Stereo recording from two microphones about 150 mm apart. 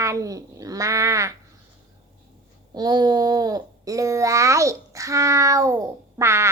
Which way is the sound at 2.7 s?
30° right (ahead or behind).